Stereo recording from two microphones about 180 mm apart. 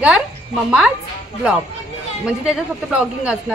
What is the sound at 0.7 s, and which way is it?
Speech, 5° right (ahead or behind).